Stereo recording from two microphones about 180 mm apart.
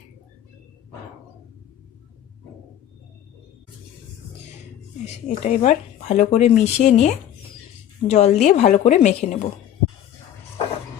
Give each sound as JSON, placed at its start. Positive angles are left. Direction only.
{"t": 5.3, "sound": "speech", "side_deg": 45}
{"t": 8.1, "sound": "speech", "side_deg": 40}